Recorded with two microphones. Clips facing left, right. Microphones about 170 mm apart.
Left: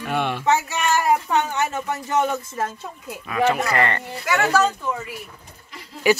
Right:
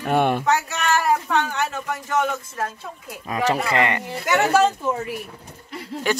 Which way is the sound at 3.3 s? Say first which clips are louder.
Left 2 dB; 35° right (ahead or behind).